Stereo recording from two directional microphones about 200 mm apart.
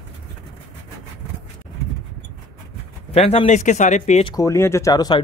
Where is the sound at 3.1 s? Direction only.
30° left (ahead or behind).